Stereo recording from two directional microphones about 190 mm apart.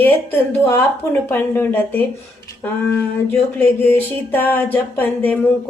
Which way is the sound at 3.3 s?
10° left (ahead or behind).